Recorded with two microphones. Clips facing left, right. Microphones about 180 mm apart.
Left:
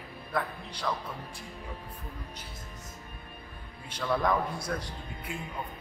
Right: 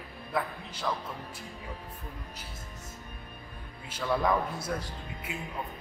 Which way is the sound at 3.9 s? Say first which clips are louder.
Even; 5° right (ahead or behind).